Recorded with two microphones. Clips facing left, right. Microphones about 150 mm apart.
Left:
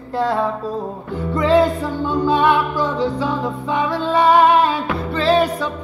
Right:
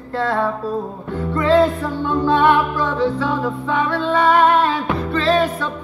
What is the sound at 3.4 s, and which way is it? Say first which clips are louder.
Music: even; 20° left (ahead or behind).